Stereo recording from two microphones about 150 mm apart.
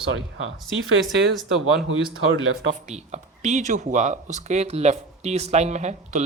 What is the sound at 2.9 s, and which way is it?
Speech, 50° right (ahead or behind).